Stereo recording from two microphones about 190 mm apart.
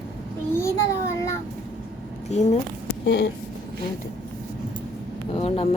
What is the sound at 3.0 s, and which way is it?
Speech, 65° left (ahead or behind).